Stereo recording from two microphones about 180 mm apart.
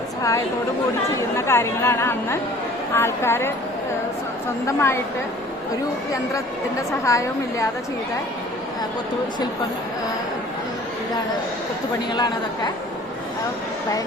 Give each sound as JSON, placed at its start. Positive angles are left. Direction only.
{"t": 0.2, "sound": "a woman's voice", "side_deg": 15}
{"t": 4.6, "sound": "speech", "side_deg": 15}
{"t": 7.0, "sound": "speech", "side_deg": 15}
{"t": 12.1, "sound": "a woman's voice", "side_deg": 20}